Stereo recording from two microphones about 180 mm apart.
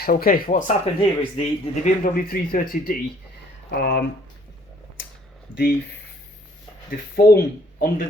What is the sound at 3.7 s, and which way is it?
Speech, 70° left (ahead or behind).